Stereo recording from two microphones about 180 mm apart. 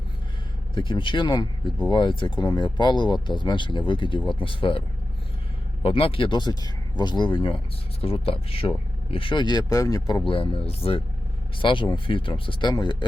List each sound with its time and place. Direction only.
0.7 s speech: 25° left (ahead or behind)
5.8 s speech: 30° left (ahead or behind)